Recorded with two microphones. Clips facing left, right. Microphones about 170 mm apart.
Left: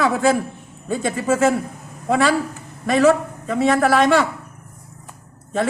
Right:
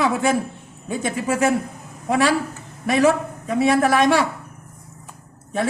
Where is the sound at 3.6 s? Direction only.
15° right (ahead or behind).